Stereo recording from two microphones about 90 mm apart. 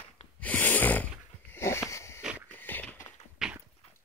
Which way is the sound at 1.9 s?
30° left (ahead or behind).